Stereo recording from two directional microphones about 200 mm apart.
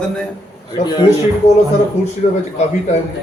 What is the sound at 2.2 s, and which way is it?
Speech, 40° left (ahead or behind).